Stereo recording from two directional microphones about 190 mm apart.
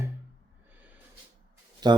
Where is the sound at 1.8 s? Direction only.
20° right (ahead or behind).